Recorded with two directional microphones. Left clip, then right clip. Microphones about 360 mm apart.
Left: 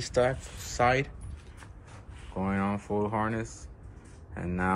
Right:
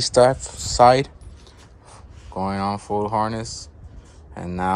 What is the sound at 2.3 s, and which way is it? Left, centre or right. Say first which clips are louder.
Speech: right 7 dB; centre.